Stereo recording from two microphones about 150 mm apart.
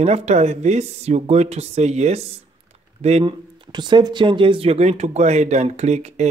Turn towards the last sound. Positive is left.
turn(degrees=-50)  # may be behind; listen again after turning